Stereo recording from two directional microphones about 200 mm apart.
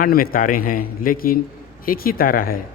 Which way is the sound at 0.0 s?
45° left (ahead or behind).